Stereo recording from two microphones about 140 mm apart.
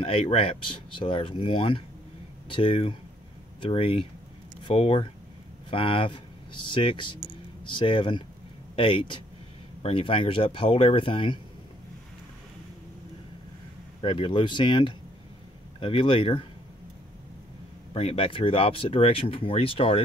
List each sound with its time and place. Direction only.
0.0 s speech: 45° left (ahead or behind)
14.0 s speech: 40° left (ahead or behind)
17.9 s speech: 40° left (ahead or behind)